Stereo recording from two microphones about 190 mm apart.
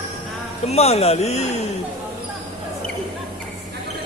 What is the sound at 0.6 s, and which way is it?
Speech, 35° left (ahead or behind).